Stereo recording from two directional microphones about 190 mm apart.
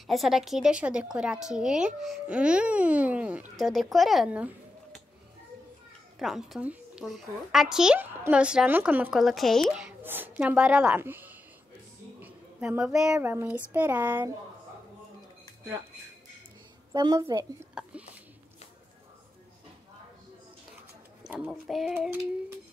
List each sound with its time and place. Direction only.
0.0 s a woman's voice: centre (ahead or behind)
6.1 s a woman's voice: centre (ahead or behind)
16.9 s a woman's voice: 20° right (ahead or behind)
21.2 s speech: 5° right (ahead or behind)